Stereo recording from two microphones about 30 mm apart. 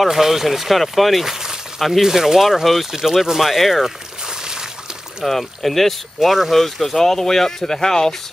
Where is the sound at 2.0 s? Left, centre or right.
Centre.